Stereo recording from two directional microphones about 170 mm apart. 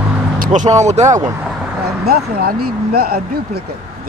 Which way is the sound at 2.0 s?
65° right (ahead or behind).